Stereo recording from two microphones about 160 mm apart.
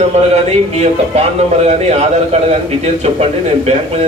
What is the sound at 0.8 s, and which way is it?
A man's voice, 40° right (ahead or behind).